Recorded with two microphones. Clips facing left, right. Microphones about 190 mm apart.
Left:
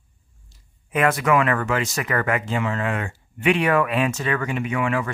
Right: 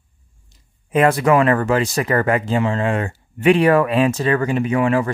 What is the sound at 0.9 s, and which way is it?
Speech, 30° right (ahead or behind).